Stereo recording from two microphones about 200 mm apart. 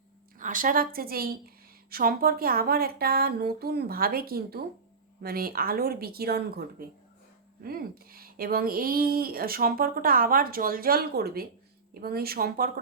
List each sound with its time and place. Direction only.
0.3 s a woman's voice: 40° right (ahead or behind)